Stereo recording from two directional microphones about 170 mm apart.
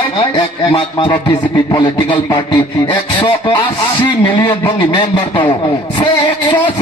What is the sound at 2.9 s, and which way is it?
Music, 30° left (ahead or behind).